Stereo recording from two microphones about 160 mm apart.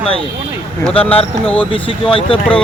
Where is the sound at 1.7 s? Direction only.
35° left (ahead or behind).